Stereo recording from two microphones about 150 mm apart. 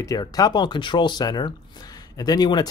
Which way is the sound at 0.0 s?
25° left (ahead or behind).